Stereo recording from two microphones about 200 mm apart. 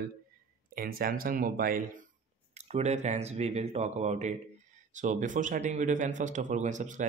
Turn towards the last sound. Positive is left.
turn(degrees=-40)  # may be behind; listen again after turning